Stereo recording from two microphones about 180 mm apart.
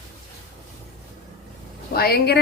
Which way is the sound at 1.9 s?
60° left (ahead or behind).